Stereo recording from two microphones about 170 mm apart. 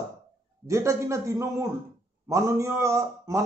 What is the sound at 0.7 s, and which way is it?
Speech, 15° right (ahead or behind).